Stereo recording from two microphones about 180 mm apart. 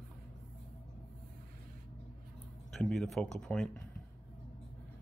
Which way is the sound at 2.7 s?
Centre (ahead or behind).